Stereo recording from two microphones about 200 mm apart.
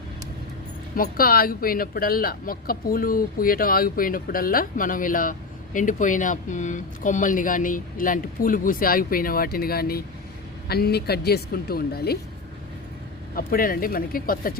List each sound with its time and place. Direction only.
1.1 s speech: 45° left (ahead or behind)
13.3 s speech: 45° left (ahead or behind)